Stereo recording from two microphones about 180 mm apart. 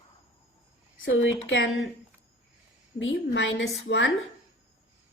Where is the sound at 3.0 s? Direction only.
90° left.